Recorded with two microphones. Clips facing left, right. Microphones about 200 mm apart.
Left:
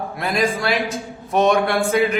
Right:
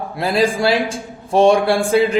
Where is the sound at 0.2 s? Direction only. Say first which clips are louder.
Right 5 dB; 30° right (ahead or behind).